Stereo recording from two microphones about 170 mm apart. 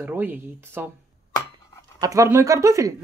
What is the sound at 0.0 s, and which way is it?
Speech, 10° right (ahead or behind).